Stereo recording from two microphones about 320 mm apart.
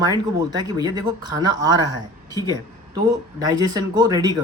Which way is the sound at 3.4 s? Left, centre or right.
Centre.